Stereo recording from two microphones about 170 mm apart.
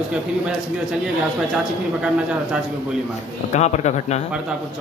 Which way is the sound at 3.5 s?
40° left (ahead or behind).